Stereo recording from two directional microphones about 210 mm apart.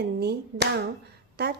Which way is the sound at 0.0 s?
50° right (ahead or behind).